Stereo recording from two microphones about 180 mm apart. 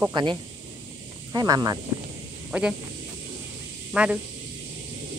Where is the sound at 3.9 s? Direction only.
5° right (ahead or behind).